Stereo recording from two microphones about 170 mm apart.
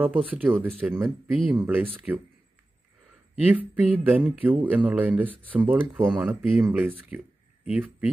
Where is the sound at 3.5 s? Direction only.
10° right (ahead or behind).